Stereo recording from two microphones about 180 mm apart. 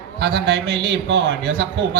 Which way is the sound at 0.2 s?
70° right (ahead or behind).